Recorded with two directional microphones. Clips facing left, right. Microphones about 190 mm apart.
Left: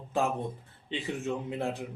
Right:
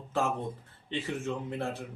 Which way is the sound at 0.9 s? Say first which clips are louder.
Left 1 dB; 15° left (ahead or behind).